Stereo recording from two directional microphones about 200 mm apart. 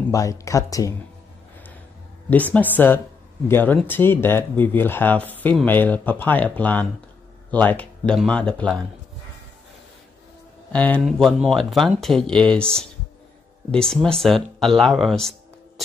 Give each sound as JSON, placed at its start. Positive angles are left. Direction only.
{"t": 0.1, "sound": "speech", "side_deg": 15}
{"t": 2.2, "sound": "speech", "side_deg": 10}
{"t": 10.7, "sound": "speech", "side_deg": 5}
{"t": 13.7, "sound": "speech", "side_deg": 5}